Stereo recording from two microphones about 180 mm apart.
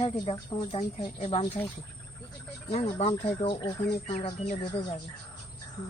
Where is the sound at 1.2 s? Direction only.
35° left (ahead or behind).